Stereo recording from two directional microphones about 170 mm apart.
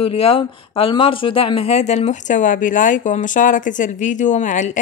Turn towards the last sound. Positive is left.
turn(degrees=45)  # may be behind; listen again after turning